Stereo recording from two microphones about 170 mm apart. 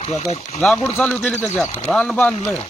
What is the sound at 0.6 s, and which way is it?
Speech, centre (ahead or behind).